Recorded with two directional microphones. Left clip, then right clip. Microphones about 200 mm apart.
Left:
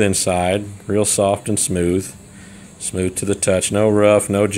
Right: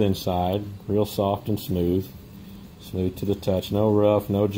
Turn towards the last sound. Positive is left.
turn(degrees=65)  # may be behind; listen again after turning